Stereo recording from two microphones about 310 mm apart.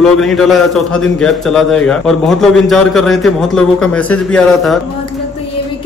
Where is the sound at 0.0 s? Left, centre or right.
Centre.